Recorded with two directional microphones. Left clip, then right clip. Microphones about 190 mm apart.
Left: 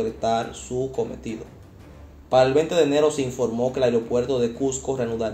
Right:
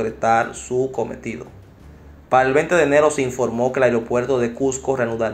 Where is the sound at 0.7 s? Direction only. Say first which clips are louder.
Right 6 dB; 30° right (ahead or behind).